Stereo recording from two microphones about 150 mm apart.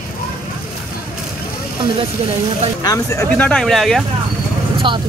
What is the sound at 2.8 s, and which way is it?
Speech, 20° left (ahead or behind).